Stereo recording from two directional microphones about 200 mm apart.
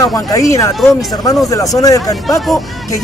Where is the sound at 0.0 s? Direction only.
15° left (ahead or behind).